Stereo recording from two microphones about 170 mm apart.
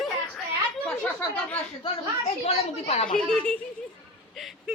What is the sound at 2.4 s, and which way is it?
Speech, 40° left (ahead or behind).